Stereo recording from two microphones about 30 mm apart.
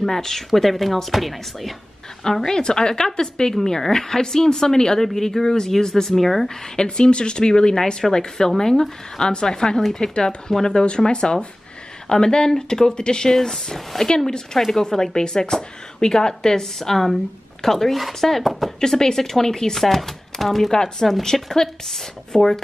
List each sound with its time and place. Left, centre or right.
0.0 s speech: centre
2.4 s speech: left
6.1 s speech: centre
6.5 s speech: centre
7.0 s speech: left; by 14.0 s centre
14.0 s speech: left